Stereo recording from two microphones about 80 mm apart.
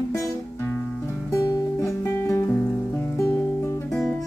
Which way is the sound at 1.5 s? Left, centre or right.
Left.